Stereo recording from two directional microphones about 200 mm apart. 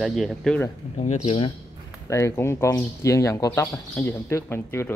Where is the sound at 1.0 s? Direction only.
35° left (ahead or behind).